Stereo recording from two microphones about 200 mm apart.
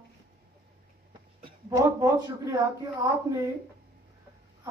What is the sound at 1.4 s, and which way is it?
Speech, 15° right (ahead or behind).